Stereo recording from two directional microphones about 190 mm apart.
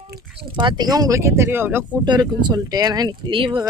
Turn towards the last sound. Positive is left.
turn(degrees=-25)  # may be behind; listen again after turning